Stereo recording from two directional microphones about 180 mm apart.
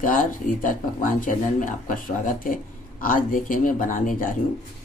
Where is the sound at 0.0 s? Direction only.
50° left (ahead or behind).